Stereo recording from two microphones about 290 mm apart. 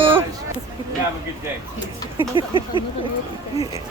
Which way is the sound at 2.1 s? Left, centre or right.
Centre.